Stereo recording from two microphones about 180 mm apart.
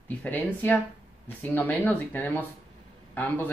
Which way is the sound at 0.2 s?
10° left (ahead or behind).